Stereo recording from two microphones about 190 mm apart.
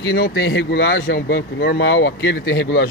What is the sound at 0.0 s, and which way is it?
Speech, 55° left (ahead or behind).